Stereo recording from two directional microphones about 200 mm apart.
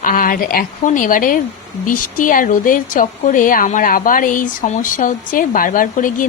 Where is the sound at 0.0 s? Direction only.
45° left (ahead or behind).